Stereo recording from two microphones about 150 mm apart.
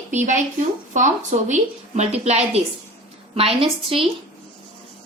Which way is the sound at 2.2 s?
45° right (ahead or behind).